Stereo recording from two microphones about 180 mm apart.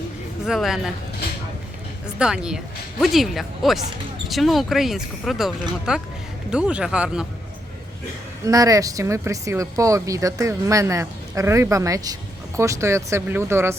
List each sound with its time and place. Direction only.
0.4 s speech: centre (ahead or behind)
2.1 s speech: 5° right (ahead or behind)
8.4 s speech: 20° right (ahead or behind)